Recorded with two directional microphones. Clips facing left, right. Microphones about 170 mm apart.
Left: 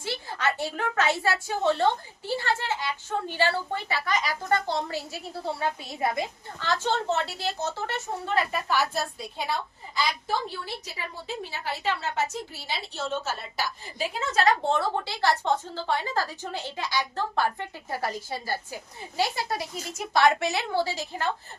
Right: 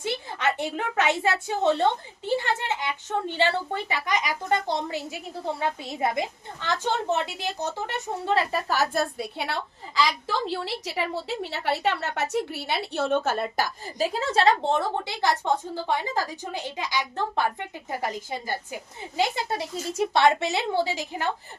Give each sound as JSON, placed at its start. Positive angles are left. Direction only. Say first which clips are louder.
{"t": 0.0, "sound": "a woman's voice", "louder": "right 2 dB", "side_deg": -20}
{"t": 8.2, "sound": "a woman's voice", "louder": "right 3 dB", "side_deg": -30}
{"t": 8.6, "sound": "a woman's voice", "louder": "right 2 dB", "side_deg": -40}